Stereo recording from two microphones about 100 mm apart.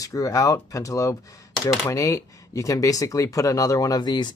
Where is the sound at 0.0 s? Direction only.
35° left (ahead or behind).